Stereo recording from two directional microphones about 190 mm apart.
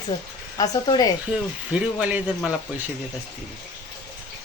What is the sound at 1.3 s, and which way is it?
Speech, 5° right (ahead or behind).